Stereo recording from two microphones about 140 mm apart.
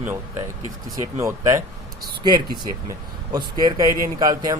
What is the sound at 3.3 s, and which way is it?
Speech, 30° right (ahead or behind).